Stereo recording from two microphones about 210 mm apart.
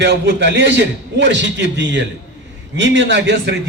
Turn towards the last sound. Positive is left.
turn(degrees=-55)  # may be behind; listen again after turning